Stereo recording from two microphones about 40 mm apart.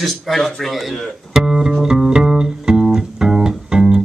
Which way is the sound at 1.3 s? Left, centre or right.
Centre.